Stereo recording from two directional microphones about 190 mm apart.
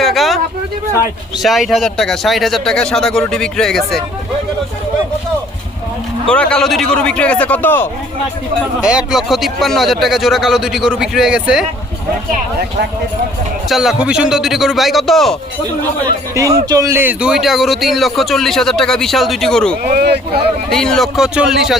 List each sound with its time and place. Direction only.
0.0 s a sound: centre (ahead or behind)
1.4 s speech: centre (ahead or behind)
6.2 s speech: 5° left (ahead or behind)
8.8 s speech: 5° right (ahead or behind)
13.7 s speech: centre (ahead or behind)
16.3 s a man's voice: 15° right (ahead or behind); by 19.7 s 5° left (ahead or behind)
19.8 s speech: 55° right (ahead or behind)
20.7 s speech: 5° left (ahead or behind)